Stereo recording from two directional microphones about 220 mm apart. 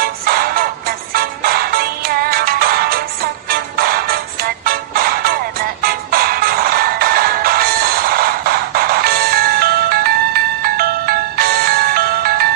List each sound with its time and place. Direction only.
0.0 s music: 40° right (ahead or behind)